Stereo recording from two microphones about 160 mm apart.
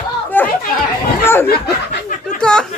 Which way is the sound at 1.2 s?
15° left (ahead or behind).